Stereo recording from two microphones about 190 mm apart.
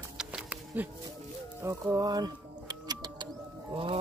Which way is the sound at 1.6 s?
15° right (ahead or behind).